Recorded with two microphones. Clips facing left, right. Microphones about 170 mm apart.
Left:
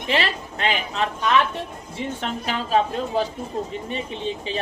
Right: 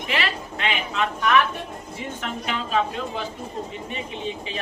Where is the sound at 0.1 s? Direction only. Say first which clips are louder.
Left 4 dB; 35° left (ahead or behind).